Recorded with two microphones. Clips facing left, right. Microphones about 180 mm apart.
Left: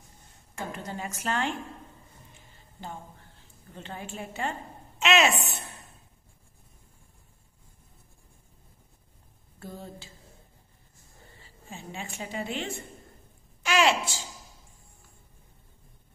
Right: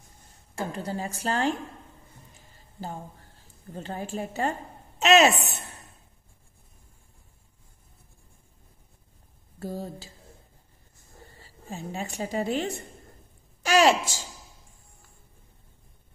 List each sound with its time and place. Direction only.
0.6 s a woman's voice: 35° right (ahead or behind)
2.3 s a sound: 40° right (ahead or behind)
3.7 s a woman's voice: 40° right (ahead or behind)
9.6 s a woman's voice: 40° right (ahead or behind)
11.3 s a woman's voice: 40° right (ahead or behind)